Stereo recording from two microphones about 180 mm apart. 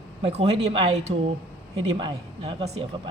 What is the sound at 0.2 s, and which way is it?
Speech, 35° right (ahead or behind).